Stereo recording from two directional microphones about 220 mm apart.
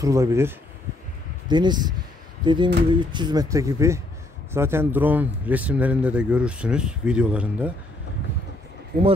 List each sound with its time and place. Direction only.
0.0 s speech: 15° right (ahead or behind)